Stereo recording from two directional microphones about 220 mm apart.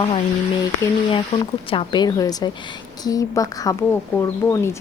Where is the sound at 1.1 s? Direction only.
20° left (ahead or behind).